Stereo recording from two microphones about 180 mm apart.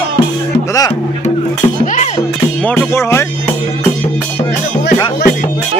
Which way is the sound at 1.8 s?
40° left (ahead or behind).